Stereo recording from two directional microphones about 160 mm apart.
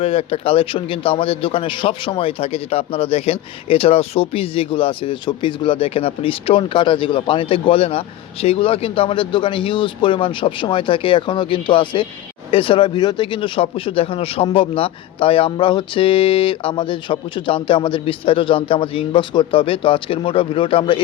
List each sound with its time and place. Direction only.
0.0 s a man's voice: 35° left (ahead or behind)